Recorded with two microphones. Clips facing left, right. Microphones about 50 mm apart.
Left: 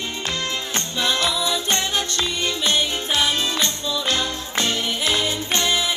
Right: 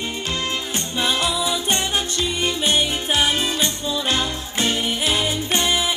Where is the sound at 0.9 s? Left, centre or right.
Centre.